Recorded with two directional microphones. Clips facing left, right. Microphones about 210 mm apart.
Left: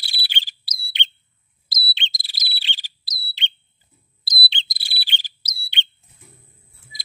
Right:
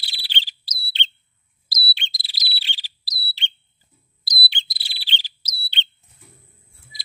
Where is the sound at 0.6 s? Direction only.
10° left (ahead or behind).